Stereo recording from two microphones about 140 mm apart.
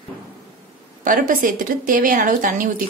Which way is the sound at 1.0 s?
75° right (ahead or behind).